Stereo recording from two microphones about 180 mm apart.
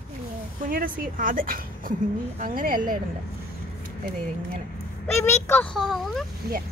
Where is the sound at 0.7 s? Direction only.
50° right (ahead or behind).